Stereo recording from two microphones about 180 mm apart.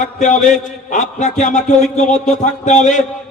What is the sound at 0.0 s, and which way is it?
A man's voice, 40° left (ahead or behind).